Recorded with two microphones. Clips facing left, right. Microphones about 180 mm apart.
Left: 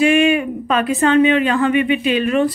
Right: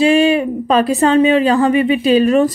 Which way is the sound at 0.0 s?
35° right (ahead or behind).